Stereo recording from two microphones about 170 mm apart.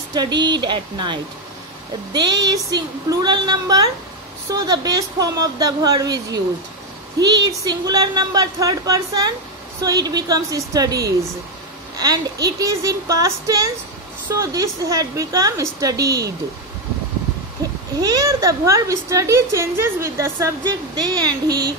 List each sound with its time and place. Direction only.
0.1 s a woman's voice: 25° right (ahead or behind)
12.4 s a woman's voice: 20° right (ahead or behind)
18.0 s a woman's voice: 20° right (ahead or behind)